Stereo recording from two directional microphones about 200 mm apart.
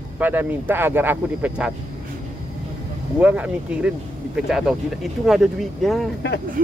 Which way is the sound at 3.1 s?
5° right (ahead or behind).